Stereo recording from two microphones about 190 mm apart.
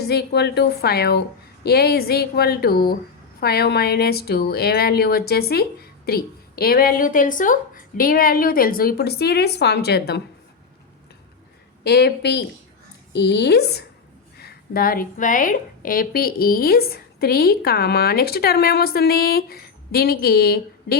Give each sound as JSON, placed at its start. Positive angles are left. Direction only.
{"t": 0.0, "sound": "speech", "side_deg": 60}
{"t": 11.8, "sound": "a woman's voice", "side_deg": 60}